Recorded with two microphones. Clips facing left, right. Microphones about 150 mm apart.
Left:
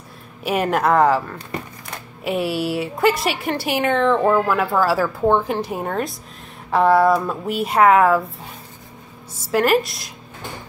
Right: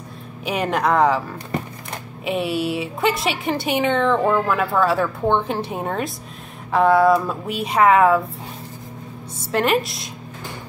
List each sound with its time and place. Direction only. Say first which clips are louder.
0.5 s a woman's voice: left 2 dB; 5° left (ahead or behind)
2.2 s a woman's voice: left 1 dB; centre (ahead or behind)
9.5 s a woman's voice: left 2 dB; centre (ahead or behind)